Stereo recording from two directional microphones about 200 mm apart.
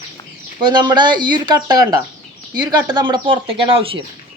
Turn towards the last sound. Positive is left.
turn(degrees=-25)  # may be behind; listen again after turning